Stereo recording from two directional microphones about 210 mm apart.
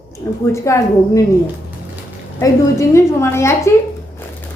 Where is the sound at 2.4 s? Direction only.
15° left (ahead or behind).